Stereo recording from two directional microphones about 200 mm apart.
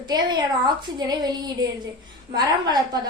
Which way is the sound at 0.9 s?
20° right (ahead or behind).